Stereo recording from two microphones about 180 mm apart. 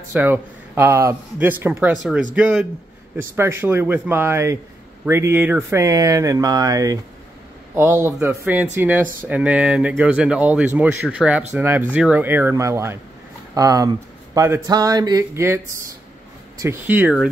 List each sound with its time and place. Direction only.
0.1 s speech: 10° right (ahead or behind)